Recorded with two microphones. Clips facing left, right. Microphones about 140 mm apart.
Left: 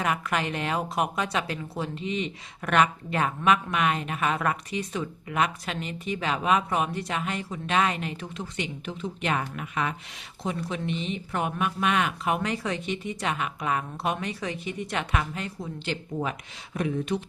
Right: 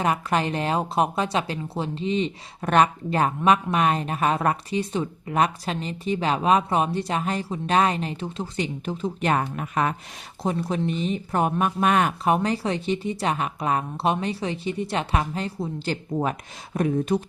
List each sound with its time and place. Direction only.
0.0 s speech: 35° right (ahead or behind)